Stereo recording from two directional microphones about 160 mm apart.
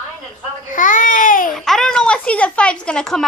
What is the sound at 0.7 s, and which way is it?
Speech, 55° left (ahead or behind).